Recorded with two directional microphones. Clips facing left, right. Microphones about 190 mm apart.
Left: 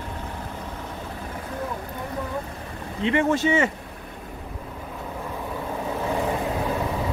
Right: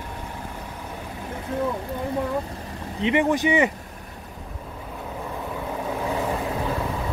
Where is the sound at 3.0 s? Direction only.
15° right (ahead or behind).